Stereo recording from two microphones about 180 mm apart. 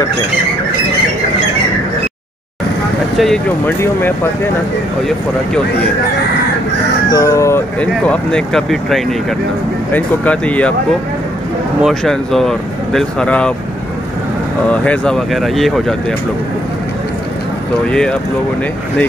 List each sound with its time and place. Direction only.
3.2 s speech: 5° left (ahead or behind)
7.1 s speech: 15° left (ahead or behind)
11.8 s speech: centre (ahead or behind)
14.7 s speech: 5° left (ahead or behind)